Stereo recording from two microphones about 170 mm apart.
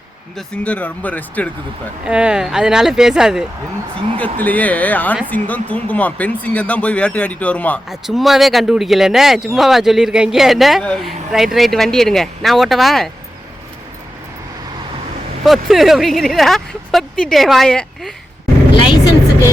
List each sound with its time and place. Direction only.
0.3 s speech: 5° left (ahead or behind)
2.0 s speech: 5° right (ahead or behind)
4.4 s speech: 10° left (ahead or behind)
7.9 s speech: centre (ahead or behind)
15.4 s speech: centre (ahead or behind)
18.8 s vehicle: 30° left (ahead or behind)